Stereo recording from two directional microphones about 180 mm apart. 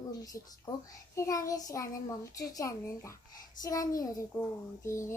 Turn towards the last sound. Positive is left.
turn(degrees=15)  # may be behind; listen again after turning